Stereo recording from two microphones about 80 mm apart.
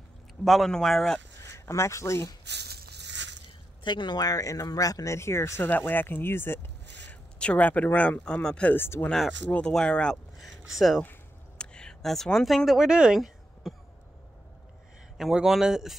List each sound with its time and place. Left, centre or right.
0.5 s speech: centre
1.5 s speech: left
3.8 s speech: left
7.3 s speech: centre
8.7 s speech: left
9.5 s speech: centre
10.4 s a sound: centre
11.5 s speech: centre
15.1 s speech: centre